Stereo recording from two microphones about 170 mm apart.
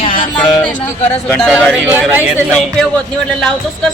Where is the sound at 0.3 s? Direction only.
5° left (ahead or behind); by 2.2 s 10° right (ahead or behind).